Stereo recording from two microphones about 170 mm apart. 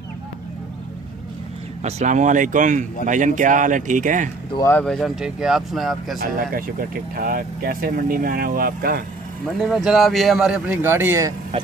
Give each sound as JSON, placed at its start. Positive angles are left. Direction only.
{"t": 1.8, "sound": "speech", "side_deg": -40}
{"t": 4.6, "sound": "a man's voice", "side_deg": 5}
{"t": 6.3, "sound": "speech", "side_deg": -55}
{"t": 9.6, "sound": "a man's voice", "side_deg": 0}